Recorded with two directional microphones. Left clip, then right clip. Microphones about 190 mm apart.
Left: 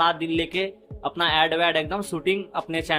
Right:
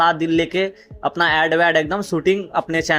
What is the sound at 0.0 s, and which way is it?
Speech, 20° right (ahead or behind).